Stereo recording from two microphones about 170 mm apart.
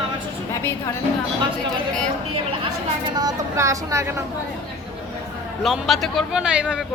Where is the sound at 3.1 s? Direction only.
20° right (ahead or behind).